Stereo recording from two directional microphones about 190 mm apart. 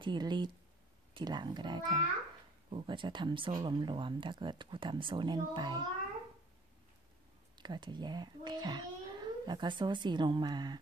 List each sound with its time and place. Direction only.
0.0 s speech: 25° right (ahead or behind)
7.5 s a child's voice: 25° right (ahead or behind)